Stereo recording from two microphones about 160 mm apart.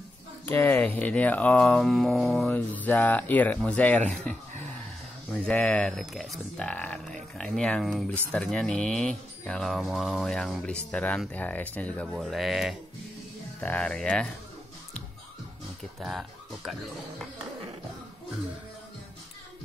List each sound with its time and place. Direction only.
0.5 s speech: 15° left (ahead or behind)
5.5 s speech: 10° left (ahead or behind)
16.0 s speech: centre (ahead or behind)